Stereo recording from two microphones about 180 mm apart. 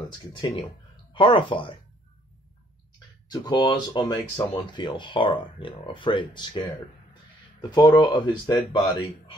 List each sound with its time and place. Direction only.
0.3 s speech: 25° left (ahead or behind)
3.3 s speech: 20° left (ahead or behind)
7.7 s speech: 25° left (ahead or behind)